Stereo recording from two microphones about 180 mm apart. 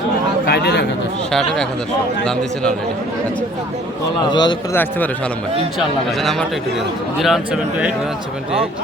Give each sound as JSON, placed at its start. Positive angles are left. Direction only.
{"t": 0.4, "sound": "speech", "side_deg": 65}
{"t": 1.3, "sound": "speech", "side_deg": 0}
{"t": 4.2, "sound": "a man's voice", "side_deg": 25}
{"t": 4.7, "sound": "a man's voice", "side_deg": 10}
{"t": 6.1, "sound": "speech", "side_deg": 0}